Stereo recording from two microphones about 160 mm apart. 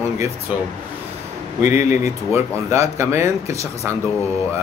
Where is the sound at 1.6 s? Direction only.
50° left (ahead or behind).